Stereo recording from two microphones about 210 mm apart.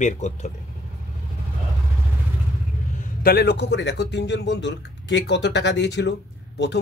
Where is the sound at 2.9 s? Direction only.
40° left (ahead or behind).